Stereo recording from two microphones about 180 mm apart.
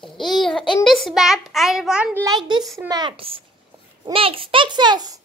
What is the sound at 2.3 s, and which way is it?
A child's voice, 25° right (ahead or behind).